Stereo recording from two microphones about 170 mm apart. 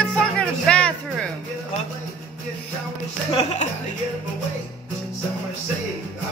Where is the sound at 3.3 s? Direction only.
40° left (ahead or behind).